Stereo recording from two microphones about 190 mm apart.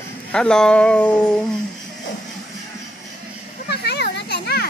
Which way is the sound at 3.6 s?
60° left (ahead or behind).